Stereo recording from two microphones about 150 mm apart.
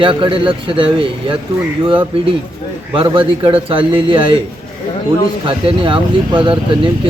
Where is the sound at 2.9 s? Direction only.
35° right (ahead or behind).